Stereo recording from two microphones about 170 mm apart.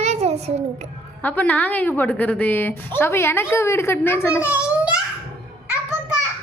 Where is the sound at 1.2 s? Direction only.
10° left (ahead or behind).